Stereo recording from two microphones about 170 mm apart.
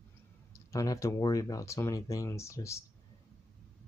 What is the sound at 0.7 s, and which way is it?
Speech, 20° left (ahead or behind).